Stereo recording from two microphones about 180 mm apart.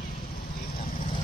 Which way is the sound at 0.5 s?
55° left (ahead or behind).